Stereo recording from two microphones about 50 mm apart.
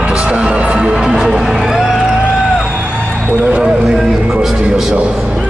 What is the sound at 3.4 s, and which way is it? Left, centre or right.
Speech, centre.